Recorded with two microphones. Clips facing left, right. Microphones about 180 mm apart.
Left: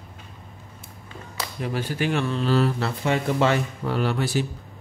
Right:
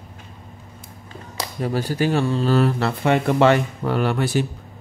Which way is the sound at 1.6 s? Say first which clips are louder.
Right 5 dB; 40° right (ahead or behind).